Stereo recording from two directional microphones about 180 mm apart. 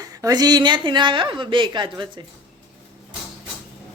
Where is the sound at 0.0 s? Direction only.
20° right (ahead or behind).